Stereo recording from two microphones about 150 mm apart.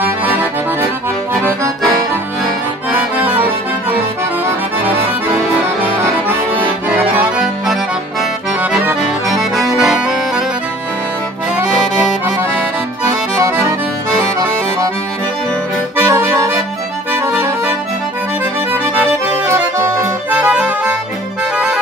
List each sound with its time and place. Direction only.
0.0 s accordion: 10° right (ahead or behind)
2.9 s accordion: 15° right (ahead or behind)
6.9 s accordion: 10° right (ahead or behind)
9.3 s accordion: centre (ahead or behind)
11.9 s accordion: 5° right (ahead or behind)
13.4 s accordion: 20° right (ahead or behind)
16.1 s accordion: 20° right (ahead or behind)
19.4 s accordion: 15° right (ahead or behind)